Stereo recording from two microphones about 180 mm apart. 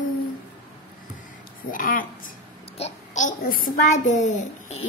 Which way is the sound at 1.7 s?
50° left (ahead or behind).